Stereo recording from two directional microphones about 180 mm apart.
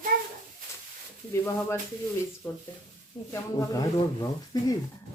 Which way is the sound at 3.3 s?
20° left (ahead or behind).